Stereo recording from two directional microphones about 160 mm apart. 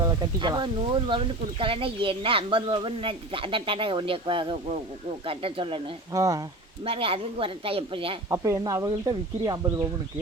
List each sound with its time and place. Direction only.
0.0 s speech: 25° right (ahead or behind)
6.1 s speech: 20° right (ahead or behind)
6.8 s speech: 35° right (ahead or behind)
8.3 s speech: 20° right (ahead or behind)